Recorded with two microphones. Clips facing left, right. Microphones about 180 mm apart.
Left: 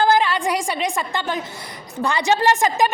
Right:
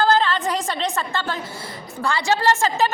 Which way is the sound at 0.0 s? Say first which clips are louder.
Left 1 dB; 15° left (ahead or behind).